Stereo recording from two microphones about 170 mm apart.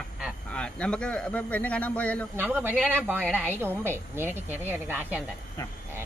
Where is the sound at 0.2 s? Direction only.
5° left (ahead or behind).